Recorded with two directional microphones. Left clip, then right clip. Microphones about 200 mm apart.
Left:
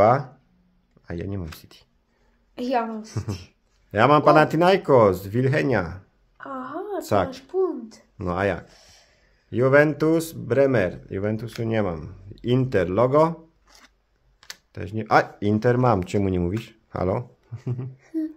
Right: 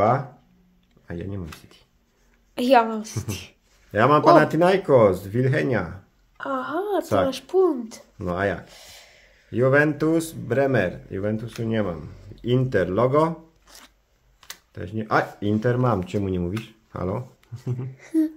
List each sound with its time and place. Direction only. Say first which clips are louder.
1.0 s speech: left 2 dB; 40° left (ahead or behind)
2.5 s a woman's voice: right 7 dB; 35° right (ahead or behind)
3.9 s speech: right 1 dB; 30° left (ahead or behind)
6.3 s a woman's voice: right 6 dB; 45° right (ahead or behind)
8.2 s speech: left 1 dB; 35° left (ahead or behind)
8.6 s a sound: right 6 dB; 35° right (ahead or behind)
9.5 s speech: left 2 dB; 30° left (ahead or behind)
13.7 s a sound: right 7 dB; 15° right (ahead or behind)
14.4 s speech: even; 30° left (ahead or behind)
16.6 s a sound: left 4 dB; 35° left (ahead or behind)
17.9 s speech: right 7 dB; 45° right (ahead or behind)